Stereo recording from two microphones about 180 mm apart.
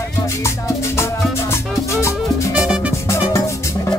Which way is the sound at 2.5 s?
5° right (ahead or behind).